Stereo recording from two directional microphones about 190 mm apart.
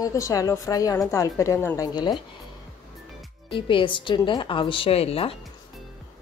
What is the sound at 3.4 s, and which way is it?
A woman's voice, 25° left (ahead or behind).